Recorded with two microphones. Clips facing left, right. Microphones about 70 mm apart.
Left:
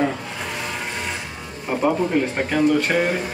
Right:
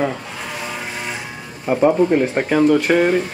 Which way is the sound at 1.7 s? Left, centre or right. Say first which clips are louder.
Right 6 dB; centre.